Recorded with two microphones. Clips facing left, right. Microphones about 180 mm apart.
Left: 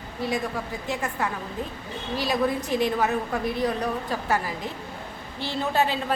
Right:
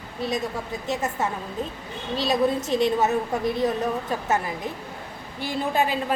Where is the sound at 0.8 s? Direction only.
20° right (ahead or behind).